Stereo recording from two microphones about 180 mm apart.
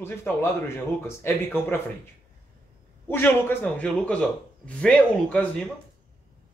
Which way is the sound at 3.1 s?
10° left (ahead or behind).